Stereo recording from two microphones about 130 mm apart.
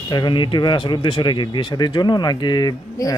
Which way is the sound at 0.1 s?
35° left (ahead or behind).